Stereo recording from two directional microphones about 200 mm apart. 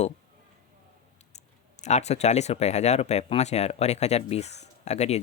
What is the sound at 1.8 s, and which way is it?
Speech, 35° left (ahead or behind).